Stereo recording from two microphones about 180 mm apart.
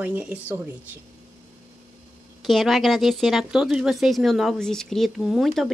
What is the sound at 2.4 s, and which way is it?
Speech, centre (ahead or behind).